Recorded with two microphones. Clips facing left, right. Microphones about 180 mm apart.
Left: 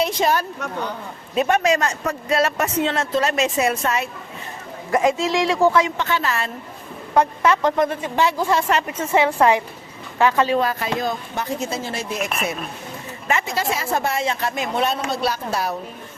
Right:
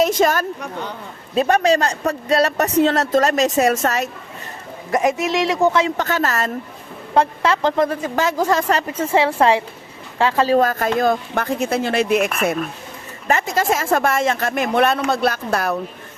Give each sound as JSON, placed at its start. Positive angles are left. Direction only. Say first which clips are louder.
{"t": 0.0, "sound": "a sound", "louder": "right 4 dB", "side_deg": -45}
{"t": 1.4, "sound": "a woman's voice", "louder": "right 3 dB", "side_deg": -35}
{"t": 4.9, "sound": "a woman's voice", "louder": "even", "side_deg": -20}
{"t": 6.0, "sound": "speech", "louder": "right 3 dB", "side_deg": -45}
{"t": 7.1, "sound": "a woman's voice", "louder": "even", "side_deg": -30}
{"t": 8.0, "sound": "a woman's voice", "louder": "right 1 dB", "side_deg": -45}
{"t": 13.2, "sound": "speech", "louder": "right 4 dB", "side_deg": -40}